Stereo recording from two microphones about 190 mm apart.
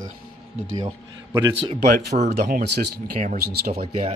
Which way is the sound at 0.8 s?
20° right (ahead or behind).